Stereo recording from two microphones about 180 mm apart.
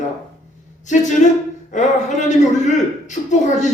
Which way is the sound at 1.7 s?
40° left (ahead or behind).